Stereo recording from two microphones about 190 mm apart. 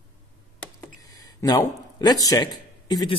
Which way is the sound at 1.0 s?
20° left (ahead or behind).